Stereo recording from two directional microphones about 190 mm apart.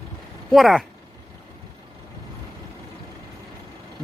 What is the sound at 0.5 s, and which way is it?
Speech, centre (ahead or behind).